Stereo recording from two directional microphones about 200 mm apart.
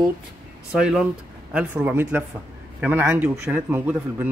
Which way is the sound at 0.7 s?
5° right (ahead or behind).